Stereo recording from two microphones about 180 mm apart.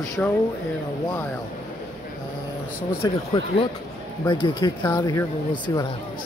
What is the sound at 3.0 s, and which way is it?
Speech, 30° left (ahead or behind).